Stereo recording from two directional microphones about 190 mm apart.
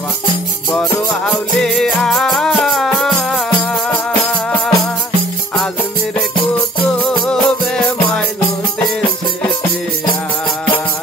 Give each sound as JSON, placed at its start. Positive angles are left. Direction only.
{"t": 1.2, "sound": "music", "side_deg": 0}
{"t": 7.0, "sound": "music", "side_deg": 5}